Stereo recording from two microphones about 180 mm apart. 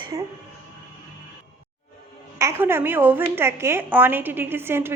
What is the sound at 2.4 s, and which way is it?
A woman's voice, 15° right (ahead or behind).